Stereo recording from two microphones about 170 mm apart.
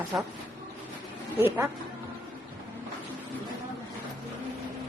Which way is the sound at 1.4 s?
10° right (ahead or behind).